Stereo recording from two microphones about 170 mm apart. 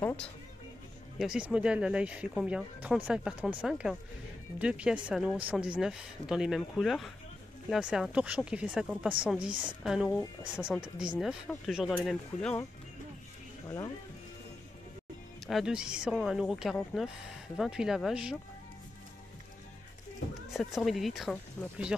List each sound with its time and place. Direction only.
0.0 s music: 10° left (ahead or behind)
1.1 s speech: 5° right (ahead or behind)
13.7 s speech: 20° left (ahead or behind)
15.4 s speech: centre (ahead or behind)
20.5 s speech: centre (ahead or behind)